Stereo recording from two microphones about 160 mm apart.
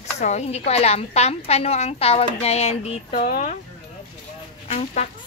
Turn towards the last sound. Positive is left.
turn(degrees=40)  # may be behind; listen again after turning